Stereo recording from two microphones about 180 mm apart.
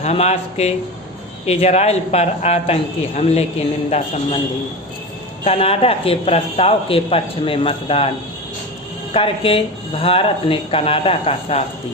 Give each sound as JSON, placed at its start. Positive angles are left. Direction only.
{"t": 0.0, "sound": "a man's voice", "side_deg": 35}
{"t": 5.5, "sound": "a man's voice", "side_deg": 35}
{"t": 9.1, "sound": "a man's voice", "side_deg": 30}